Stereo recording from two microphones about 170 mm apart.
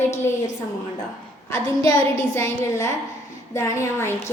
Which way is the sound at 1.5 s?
20° left (ahead or behind).